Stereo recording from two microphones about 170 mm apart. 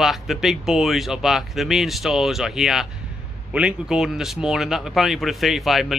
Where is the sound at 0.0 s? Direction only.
Centre (ahead or behind).